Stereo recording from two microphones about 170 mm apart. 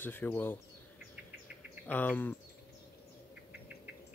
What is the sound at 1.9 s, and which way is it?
Speech, 10° left (ahead or behind).